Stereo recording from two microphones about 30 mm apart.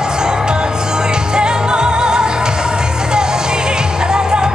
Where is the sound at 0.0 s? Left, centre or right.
Right.